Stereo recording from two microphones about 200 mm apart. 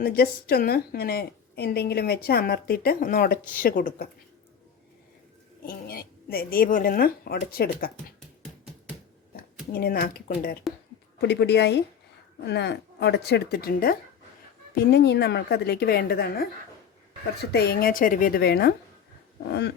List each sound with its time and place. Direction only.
0.0 s a woman's voice: 50° left (ahead or behind)
5.6 s speech: 50° left (ahead or behind)
9.7 s a woman's voice: 50° left (ahead or behind)
10.7 s a sound: centre (ahead or behind)
11.2 s a woman's voice: 55° left (ahead or behind)